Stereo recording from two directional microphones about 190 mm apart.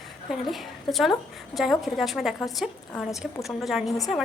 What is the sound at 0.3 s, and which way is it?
A woman's voice, centre (ahead or behind).